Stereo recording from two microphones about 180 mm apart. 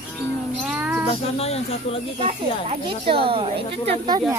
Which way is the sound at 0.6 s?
5° right (ahead or behind).